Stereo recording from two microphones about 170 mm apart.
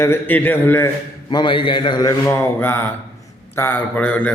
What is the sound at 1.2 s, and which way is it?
A man's voice, 30° left (ahead or behind).